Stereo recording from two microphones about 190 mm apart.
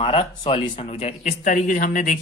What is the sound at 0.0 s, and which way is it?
Speech, 30° left (ahead or behind).